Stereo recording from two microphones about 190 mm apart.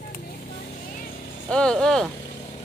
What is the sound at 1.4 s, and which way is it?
Speech, 5° left (ahead or behind).